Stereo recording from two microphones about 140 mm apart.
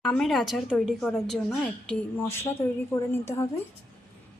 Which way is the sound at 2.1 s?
20° left (ahead or behind).